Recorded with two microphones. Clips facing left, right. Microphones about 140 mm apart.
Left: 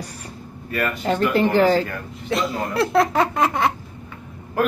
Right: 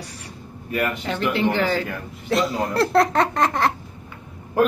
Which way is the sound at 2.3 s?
Centre (ahead or behind).